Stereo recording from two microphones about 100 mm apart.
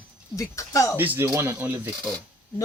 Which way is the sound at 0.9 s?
20° right (ahead or behind).